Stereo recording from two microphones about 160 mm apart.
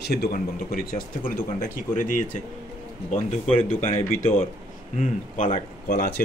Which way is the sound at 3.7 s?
45° left (ahead or behind).